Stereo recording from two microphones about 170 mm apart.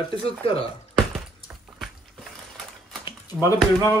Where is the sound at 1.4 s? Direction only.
Centre (ahead or behind).